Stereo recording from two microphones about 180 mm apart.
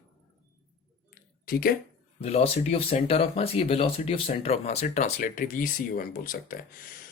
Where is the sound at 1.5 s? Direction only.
55° left (ahead or behind).